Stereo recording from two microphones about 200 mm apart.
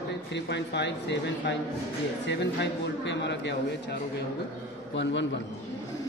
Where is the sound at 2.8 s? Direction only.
60° left (ahead or behind).